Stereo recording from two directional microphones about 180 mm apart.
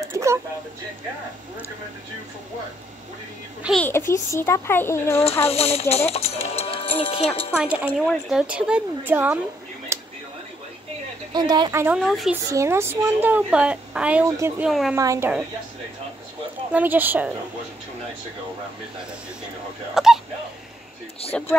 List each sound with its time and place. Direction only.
0.0 s a sound: 15° right (ahead or behind)
3.8 s a child's voice: 15° left (ahead or behind)
5.2 s speech: 35° left (ahead or behind)
7.8 s speech: 5° right (ahead or behind)
9.9 s a sound: 15° right (ahead or behind)
11.3 s speech: 25° right (ahead or behind)
12.0 s speech: centre (ahead or behind)
12.4 s a woman's voice: 15° right (ahead or behind)
15.0 s a woman's voice: 15° right (ahead or behind)
16.7 s a woman's voice: 10° right (ahead or behind)
19.9 s speech: centre (ahead or behind)
21.3 s speech: 5° left (ahead or behind)